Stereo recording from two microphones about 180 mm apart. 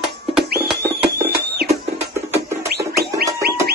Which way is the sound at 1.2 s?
60° right (ahead or behind).